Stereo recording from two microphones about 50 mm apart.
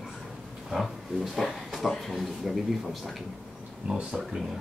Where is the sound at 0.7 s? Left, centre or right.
Centre.